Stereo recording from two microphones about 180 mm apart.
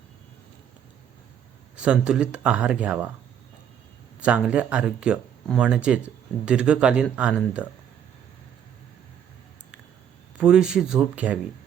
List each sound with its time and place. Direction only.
1.7 s speech: 5° right (ahead or behind)
4.2 s speech: 5° right (ahead or behind)
10.3 s speech: 5° right (ahead or behind)